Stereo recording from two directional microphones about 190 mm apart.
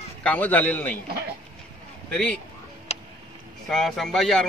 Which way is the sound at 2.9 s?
35° left (ahead or behind).